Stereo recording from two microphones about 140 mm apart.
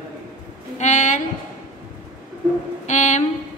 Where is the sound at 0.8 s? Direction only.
60° left (ahead or behind).